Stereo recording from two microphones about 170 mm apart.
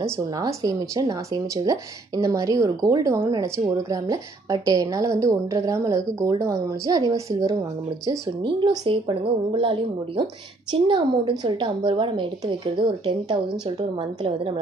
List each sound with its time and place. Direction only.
0.4 s a woman's voice: 20° right (ahead or behind)